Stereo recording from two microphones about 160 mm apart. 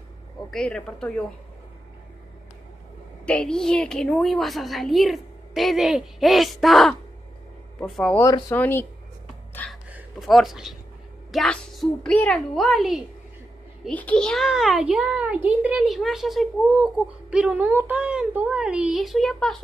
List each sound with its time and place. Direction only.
0.5 s a child's voice: 5° left (ahead or behind)
3.3 s a child's voice: 5° left (ahead or behind)
8.2 s speech: 20° left (ahead or behind)
9.8 s a sound: 5° right (ahead or behind)
11.3 s a child's voice: 5° left (ahead or behind)